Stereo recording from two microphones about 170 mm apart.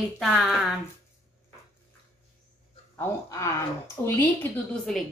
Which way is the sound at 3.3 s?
15° left (ahead or behind).